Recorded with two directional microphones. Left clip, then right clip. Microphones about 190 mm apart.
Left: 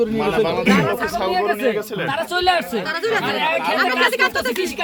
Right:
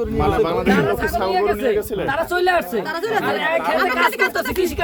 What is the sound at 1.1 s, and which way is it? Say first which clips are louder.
Speech: right 1 dB; 65° right (ahead or behind).